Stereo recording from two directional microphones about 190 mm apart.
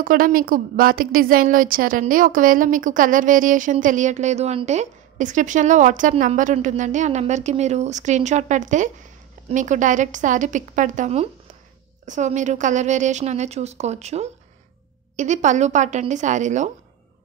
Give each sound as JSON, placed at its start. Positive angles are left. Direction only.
{"t": 0.0, "sound": "a woman's voice", "side_deg": -50}